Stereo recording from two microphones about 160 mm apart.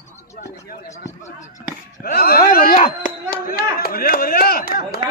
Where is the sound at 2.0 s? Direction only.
70° left (ahead or behind).